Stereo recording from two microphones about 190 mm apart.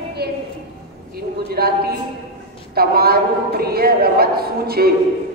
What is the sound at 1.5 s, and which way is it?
A woman's voice, 55° right (ahead or behind).